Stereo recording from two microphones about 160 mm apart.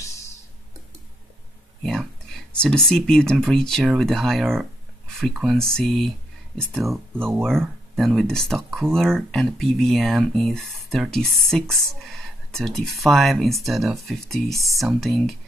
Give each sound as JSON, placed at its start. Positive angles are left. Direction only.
{"t": 0.0, "sound": "clicking", "side_deg": 20}
{"t": 1.8, "sound": "speech", "side_deg": 0}
{"t": 7.2, "sound": "speech", "side_deg": -15}
{"t": 7.9, "sound": "speech", "side_deg": 0}
{"t": 14.5, "sound": "speech", "side_deg": -20}
{"t": 14.8, "sound": "speech", "side_deg": 0}